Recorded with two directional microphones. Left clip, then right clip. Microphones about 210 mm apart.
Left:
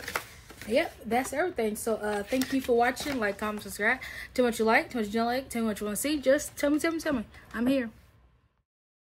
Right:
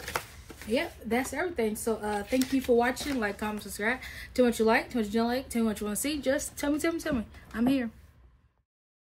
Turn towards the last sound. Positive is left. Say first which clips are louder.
# left 1 dB
turn(degrees=10)  # may be behind; listen again after turning